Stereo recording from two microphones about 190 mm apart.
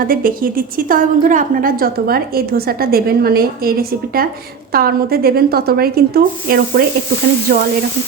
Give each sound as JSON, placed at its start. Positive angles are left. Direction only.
{"t": 0.0, "sound": "a woman's voice", "side_deg": -50}